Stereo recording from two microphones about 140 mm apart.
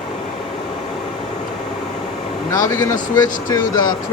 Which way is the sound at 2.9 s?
65° left (ahead or behind).